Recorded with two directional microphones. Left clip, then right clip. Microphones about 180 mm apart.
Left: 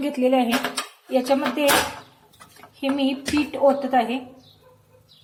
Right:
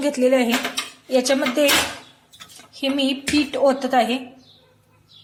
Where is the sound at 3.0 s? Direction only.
30° right (ahead or behind).